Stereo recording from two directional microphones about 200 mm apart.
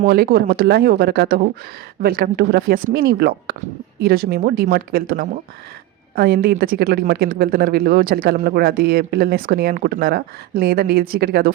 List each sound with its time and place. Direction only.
0.0 s speech: 45° right (ahead or behind)